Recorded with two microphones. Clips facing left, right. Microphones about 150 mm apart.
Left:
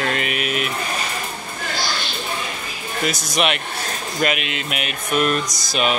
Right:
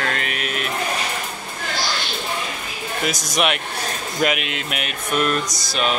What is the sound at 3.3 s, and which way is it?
Speech, 5° right (ahead or behind).